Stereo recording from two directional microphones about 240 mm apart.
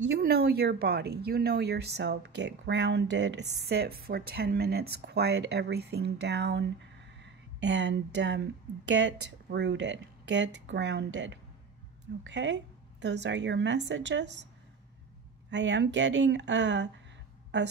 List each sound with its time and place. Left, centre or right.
0.0 s a woman's voice: right
15.5 s speech: right